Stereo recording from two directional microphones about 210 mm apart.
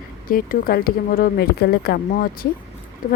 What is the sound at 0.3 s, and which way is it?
Speech, 40° left (ahead or behind).